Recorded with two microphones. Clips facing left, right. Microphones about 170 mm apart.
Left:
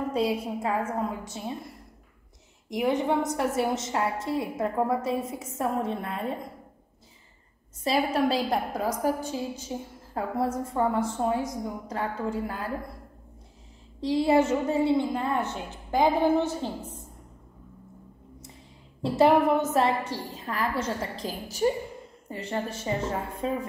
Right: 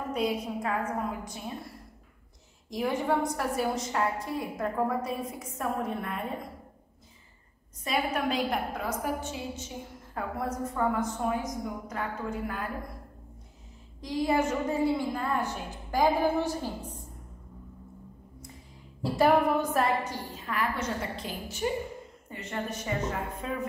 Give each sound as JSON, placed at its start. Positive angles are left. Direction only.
{"t": 0.1, "sound": "a woman's voice", "side_deg": 30}
{"t": 2.7, "sound": "a woman's voice", "side_deg": 20}
{"t": 7.8, "sound": "a woman's voice", "side_deg": 30}
{"t": 14.0, "sound": "a woman's voice", "side_deg": 30}
{"t": 19.0, "sound": "a woman's voice", "side_deg": 25}